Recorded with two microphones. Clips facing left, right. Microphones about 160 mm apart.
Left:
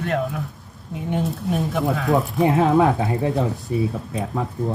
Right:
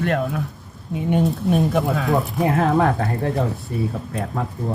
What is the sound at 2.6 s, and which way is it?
Speech, 5° left (ahead or behind).